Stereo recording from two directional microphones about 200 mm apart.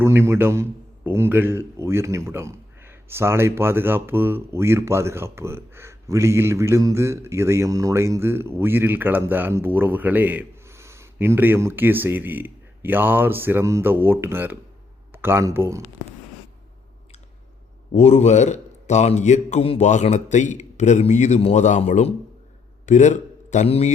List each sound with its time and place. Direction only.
0.0 s a man's voice: 10° right (ahead or behind)
17.9 s a man's voice: 35° left (ahead or behind)